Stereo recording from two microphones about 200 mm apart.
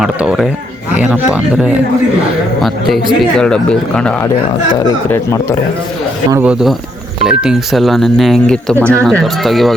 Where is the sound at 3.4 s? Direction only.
5° left (ahead or behind).